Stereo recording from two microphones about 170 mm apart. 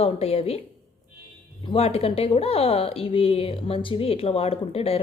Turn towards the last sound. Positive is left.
turn(degrees=35)  # may be behind; listen again after turning